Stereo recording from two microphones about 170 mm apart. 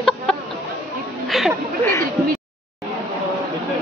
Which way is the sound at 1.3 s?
Centre (ahead or behind).